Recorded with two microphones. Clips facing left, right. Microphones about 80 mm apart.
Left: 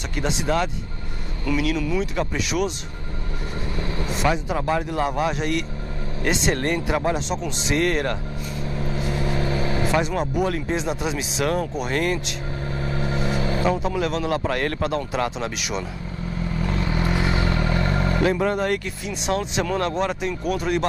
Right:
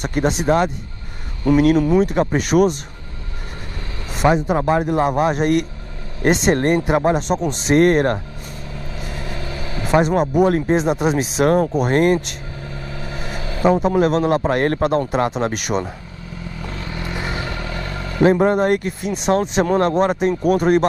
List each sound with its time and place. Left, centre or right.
0.0 s speech: right
4.2 s speech: right
5.2 s speech: right
7.2 s speech: right
9.1 s vehicle: left
10.3 s speech: right
12.8 s a sound: left
13.7 s speech: right
16.6 s vehicle: left
17.2 s vehicle: right
17.5 s vehicle: left
18.2 s speech: right